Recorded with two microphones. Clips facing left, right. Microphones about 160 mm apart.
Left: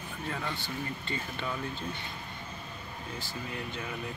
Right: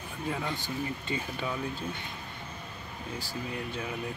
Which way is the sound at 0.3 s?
15° right (ahead or behind).